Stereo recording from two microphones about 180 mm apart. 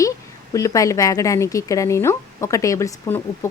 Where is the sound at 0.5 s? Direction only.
20° left (ahead or behind).